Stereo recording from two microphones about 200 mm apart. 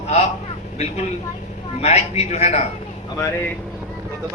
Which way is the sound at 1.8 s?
30° left (ahead or behind).